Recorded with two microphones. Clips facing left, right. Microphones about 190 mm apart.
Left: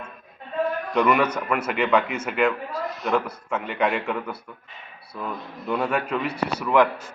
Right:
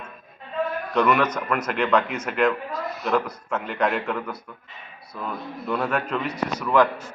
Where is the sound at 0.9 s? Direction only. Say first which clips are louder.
Even; 10° left (ahead or behind).